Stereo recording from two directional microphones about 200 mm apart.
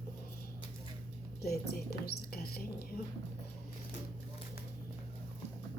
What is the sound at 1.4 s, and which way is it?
Speech, 50° left (ahead or behind).